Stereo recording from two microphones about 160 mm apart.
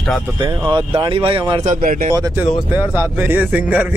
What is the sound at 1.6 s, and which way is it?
Speech, 60° right (ahead or behind).